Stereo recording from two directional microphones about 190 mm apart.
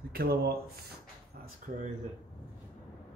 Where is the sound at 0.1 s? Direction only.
50° right (ahead or behind).